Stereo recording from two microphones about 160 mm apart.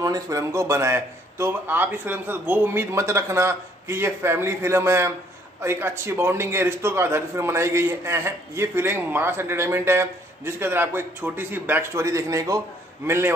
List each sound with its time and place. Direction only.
0.0 s speech: 20° right (ahead or behind)